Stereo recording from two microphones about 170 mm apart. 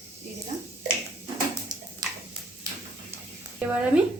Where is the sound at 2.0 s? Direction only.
20° right (ahead or behind).